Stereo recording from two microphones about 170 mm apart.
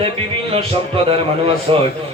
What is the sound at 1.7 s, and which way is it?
Speech, 30° right (ahead or behind).